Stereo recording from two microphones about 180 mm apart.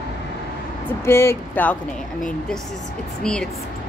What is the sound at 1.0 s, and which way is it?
Speech, 15° left (ahead or behind).